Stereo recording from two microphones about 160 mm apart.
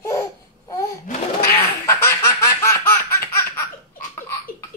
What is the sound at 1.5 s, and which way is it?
Baby laughter, 15° left (ahead or behind).